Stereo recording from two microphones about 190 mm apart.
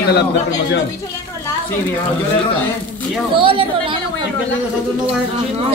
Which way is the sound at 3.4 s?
25° right (ahead or behind).